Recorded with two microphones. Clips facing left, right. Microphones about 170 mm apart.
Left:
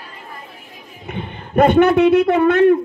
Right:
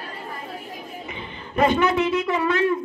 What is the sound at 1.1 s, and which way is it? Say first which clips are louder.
A woman's voice: left 6 dB; 60° left (ahead or behind).